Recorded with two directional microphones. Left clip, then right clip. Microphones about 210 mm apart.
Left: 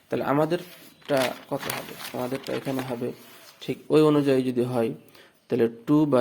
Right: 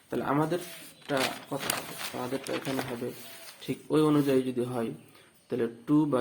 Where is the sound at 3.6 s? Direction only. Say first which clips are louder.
Left 6 dB; 35° left (ahead or behind).